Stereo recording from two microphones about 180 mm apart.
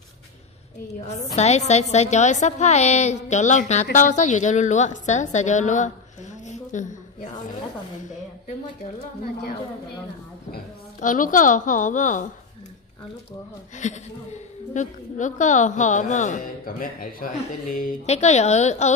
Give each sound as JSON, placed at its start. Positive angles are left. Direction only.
{"t": 1.0, "sound": "a woman's voice", "side_deg": 40}
{"t": 6.4, "sound": "a sound", "side_deg": 40}
{"t": 10.5, "sound": "a woman's voice", "side_deg": 45}
{"t": 13.7, "sound": "a woman's voice", "side_deg": 40}